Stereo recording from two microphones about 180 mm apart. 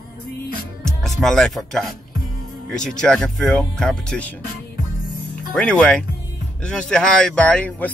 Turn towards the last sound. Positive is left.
turn(degrees=10)  # may be behind; listen again after turning